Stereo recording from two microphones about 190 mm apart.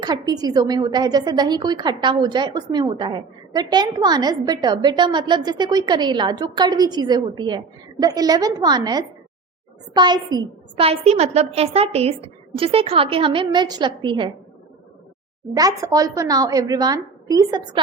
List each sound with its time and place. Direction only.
0.0 s a woman's voice: 20° right (ahead or behind)
15.5 s a woman's voice: 20° right (ahead or behind)